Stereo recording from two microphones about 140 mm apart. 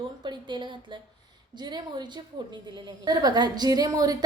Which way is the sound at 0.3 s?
30° right (ahead or behind).